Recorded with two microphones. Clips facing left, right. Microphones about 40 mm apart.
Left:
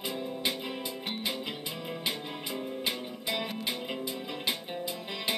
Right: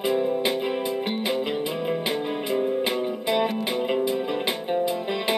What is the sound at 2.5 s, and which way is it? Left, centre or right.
Music, right.